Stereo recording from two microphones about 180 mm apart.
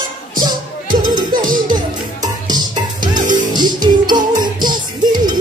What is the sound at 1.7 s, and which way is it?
Music, 20° right (ahead or behind).